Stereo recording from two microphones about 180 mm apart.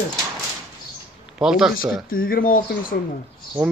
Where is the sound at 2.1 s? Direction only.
50° left (ahead or behind).